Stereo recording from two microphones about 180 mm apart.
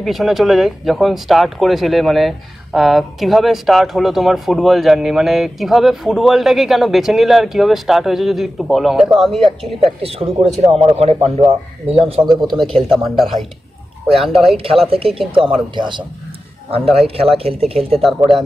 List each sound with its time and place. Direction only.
0.0 s speech: centre (ahead or behind)
10.0 s speech: 30° right (ahead or behind)
12.3 s speech: centre (ahead or behind)
14.9 s speech: 30° right (ahead or behind)
17.4 s speech: 30° right (ahead or behind)
17.9 s speech: centre (ahead or behind)